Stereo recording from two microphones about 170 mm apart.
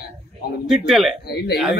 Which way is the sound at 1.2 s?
70° left (ahead or behind).